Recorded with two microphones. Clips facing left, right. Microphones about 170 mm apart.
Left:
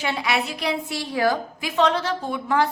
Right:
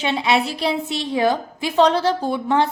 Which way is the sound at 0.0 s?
25° right (ahead or behind).